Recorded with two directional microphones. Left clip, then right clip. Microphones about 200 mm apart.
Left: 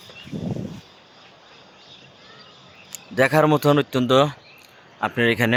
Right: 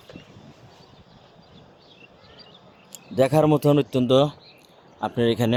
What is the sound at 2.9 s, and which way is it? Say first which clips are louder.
Speech: left 2 dB; centre (ahead or behind).